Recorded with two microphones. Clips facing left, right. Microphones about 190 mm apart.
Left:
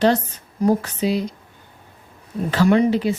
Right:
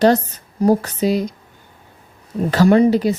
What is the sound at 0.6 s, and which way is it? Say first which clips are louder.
Speech: right 3 dB; 40° right (ahead or behind).